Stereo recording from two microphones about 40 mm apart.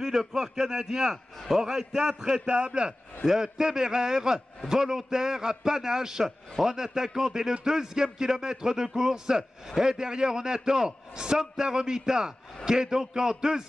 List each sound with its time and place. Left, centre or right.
0.0 s a man's voice: centre
3.3 s a man's voice: centre